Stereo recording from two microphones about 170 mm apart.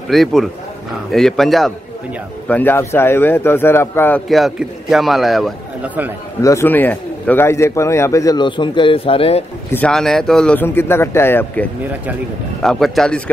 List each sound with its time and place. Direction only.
0.1 s a man's voice: centre (ahead or behind)
4.3 s a man's voice: centre (ahead or behind)
6.4 s speech: 15° left (ahead or behind); by 9.4 s 35° left (ahead or behind)
9.7 s speech: 10° left (ahead or behind)
12.6 s a man's voice: centre (ahead or behind)